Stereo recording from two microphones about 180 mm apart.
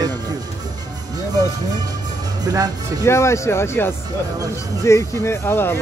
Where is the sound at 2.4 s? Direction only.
20° right (ahead or behind).